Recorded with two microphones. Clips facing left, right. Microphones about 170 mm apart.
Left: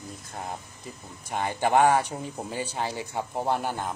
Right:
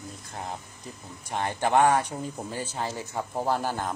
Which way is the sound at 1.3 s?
10° left (ahead or behind).